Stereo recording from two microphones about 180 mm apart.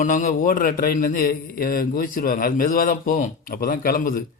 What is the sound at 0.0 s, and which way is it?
A man's voice, 45° left (ahead or behind).